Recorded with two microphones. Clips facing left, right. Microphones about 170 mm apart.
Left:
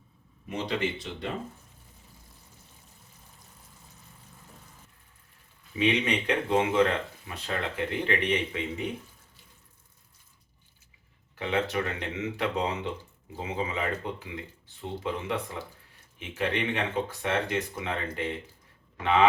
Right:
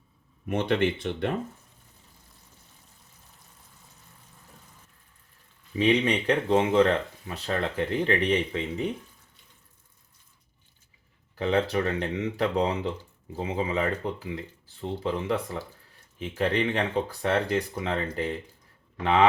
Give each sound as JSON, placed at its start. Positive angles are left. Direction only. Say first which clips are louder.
{"t": 0.4, "sound": "speech", "louder": "right 6 dB", "side_deg": -60}
{"t": 5.7, "sound": "speech", "louder": "right 3 dB", "side_deg": -35}
{"t": 11.3, "sound": "speech", "louder": "right 4 dB", "side_deg": -40}